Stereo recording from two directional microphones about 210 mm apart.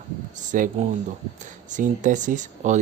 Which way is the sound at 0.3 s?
40° right (ahead or behind).